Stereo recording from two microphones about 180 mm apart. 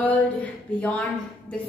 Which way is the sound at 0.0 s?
10° left (ahead or behind).